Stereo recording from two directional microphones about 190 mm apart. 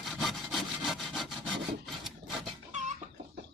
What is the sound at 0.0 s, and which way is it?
Sawing, centre (ahead or behind).